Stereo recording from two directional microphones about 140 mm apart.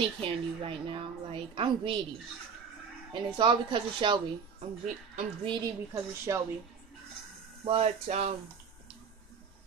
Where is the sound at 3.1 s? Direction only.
35° right (ahead or behind).